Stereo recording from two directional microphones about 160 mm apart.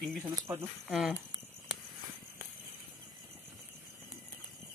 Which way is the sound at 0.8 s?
5° right (ahead or behind).